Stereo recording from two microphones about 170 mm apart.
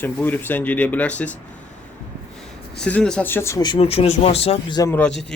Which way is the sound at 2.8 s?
5° left (ahead or behind).